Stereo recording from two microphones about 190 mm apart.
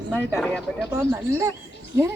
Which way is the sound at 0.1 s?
5° left (ahead or behind).